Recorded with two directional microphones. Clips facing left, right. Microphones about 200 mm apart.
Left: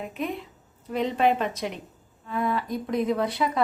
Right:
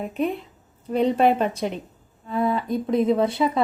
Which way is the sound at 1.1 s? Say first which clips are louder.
Right 2 dB; 40° right (ahead or behind).